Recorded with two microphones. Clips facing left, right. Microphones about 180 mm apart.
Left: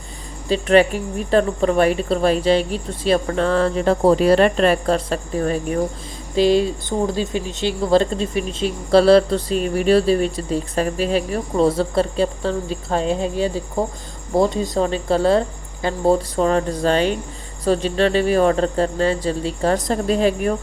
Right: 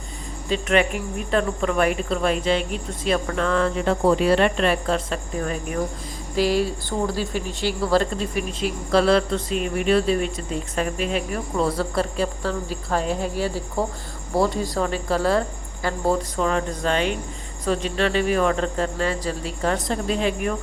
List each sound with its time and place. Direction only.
0.4 s cricket: 35° left (ahead or behind)
6.3 s speech: 25° left (ahead or behind)
17.7 s cricket: 30° left (ahead or behind)